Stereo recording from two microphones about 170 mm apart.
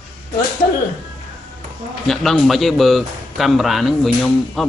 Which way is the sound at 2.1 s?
Centre (ahead or behind).